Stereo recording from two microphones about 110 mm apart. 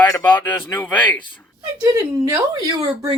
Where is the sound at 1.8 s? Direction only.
25° right (ahead or behind).